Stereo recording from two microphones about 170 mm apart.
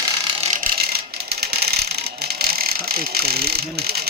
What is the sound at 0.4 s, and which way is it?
Mechanisms, 50° right (ahead or behind).